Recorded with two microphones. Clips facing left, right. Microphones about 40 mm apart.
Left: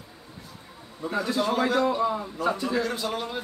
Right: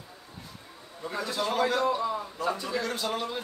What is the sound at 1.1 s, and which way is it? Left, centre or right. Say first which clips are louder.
A man's voice: left 4 dB; centre.